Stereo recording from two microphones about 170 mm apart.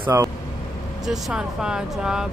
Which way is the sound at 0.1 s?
20° right (ahead or behind).